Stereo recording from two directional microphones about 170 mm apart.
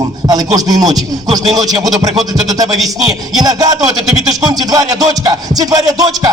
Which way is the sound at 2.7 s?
Centre (ahead or behind).